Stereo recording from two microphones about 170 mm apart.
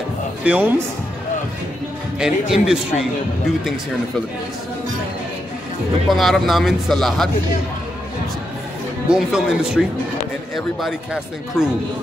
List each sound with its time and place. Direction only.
0.4 s a man's voice: 10° right (ahead or behind)
2.1 s speech: 5° right (ahead or behind)
6.0 s speech: centre (ahead or behind)
9.1 s speech: 5° right (ahead or behind)